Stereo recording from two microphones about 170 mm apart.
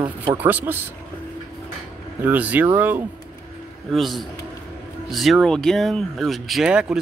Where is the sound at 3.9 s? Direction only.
Centre (ahead or behind).